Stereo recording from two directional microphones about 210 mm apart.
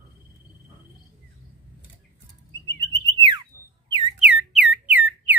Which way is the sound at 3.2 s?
20° right (ahead or behind).